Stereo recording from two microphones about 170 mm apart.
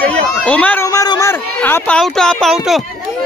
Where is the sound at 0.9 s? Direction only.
20° left (ahead or behind).